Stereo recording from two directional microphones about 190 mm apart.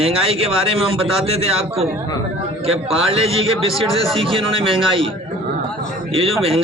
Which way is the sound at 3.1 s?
30° right (ahead or behind).